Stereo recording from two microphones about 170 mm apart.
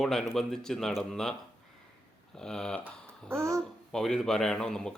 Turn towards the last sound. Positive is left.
turn(degrees=5)  # may be behind; listen again after turning